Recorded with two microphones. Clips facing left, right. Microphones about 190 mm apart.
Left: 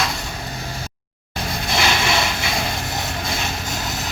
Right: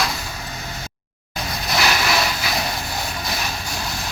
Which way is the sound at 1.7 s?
25° left (ahead or behind).